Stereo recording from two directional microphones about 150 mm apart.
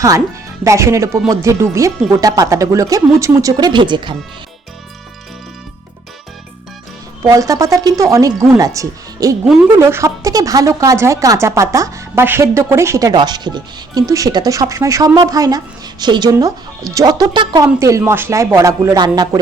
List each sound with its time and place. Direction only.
0.6 s speech: 20° right (ahead or behind)
7.2 s speech: 20° right (ahead or behind)
17.7 s speech: 20° right (ahead or behind)